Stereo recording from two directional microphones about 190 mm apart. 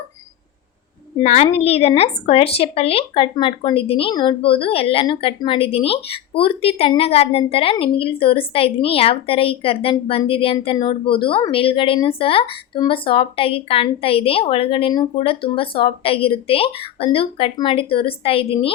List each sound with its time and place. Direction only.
1.2 s a child's voice: 35° left (ahead or behind)